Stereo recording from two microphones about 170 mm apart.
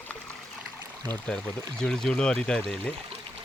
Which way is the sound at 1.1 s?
5° left (ahead or behind).